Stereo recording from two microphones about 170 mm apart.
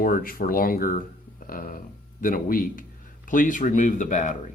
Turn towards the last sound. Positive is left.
turn(degrees=45)  # may be behind; listen again after turning